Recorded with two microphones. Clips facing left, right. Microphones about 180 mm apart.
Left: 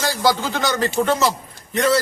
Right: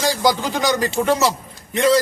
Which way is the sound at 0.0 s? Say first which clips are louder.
Right 1 dB; 15° right (ahead or behind).